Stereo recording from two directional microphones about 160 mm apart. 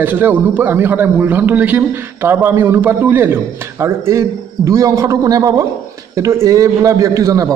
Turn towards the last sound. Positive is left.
turn(degrees=-20)  # may be behind; listen again after turning